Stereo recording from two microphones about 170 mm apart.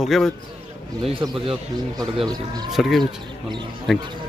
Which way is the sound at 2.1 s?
25° right (ahead or behind).